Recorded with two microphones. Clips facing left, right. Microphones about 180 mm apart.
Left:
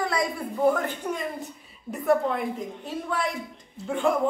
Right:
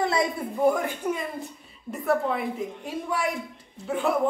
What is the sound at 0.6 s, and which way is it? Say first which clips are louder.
Speech: even; 10° right (ahead or behind).